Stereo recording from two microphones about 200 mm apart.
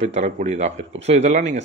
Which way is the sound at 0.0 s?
35° right (ahead or behind).